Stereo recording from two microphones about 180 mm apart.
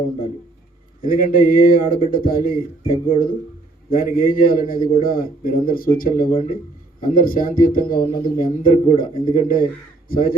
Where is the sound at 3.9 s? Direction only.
55° left (ahead or behind).